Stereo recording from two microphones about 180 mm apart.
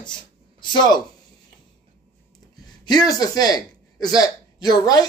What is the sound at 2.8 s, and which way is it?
Speech, 20° left (ahead or behind).